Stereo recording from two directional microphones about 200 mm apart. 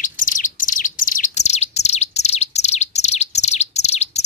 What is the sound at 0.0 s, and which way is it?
Bird, 40° left (ahead or behind).